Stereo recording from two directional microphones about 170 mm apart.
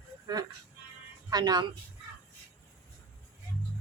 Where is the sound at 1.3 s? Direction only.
25° right (ahead or behind).